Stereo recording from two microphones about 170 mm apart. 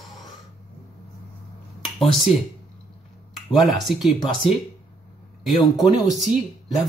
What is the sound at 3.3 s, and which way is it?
Speech, centre (ahead or behind).